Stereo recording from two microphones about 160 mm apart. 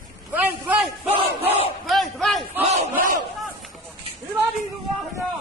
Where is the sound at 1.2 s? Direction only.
40° right (ahead or behind).